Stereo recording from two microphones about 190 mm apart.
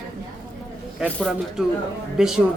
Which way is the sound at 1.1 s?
5° left (ahead or behind).